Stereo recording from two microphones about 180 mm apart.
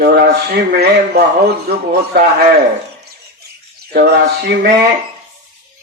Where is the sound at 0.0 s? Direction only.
60° right (ahead or behind).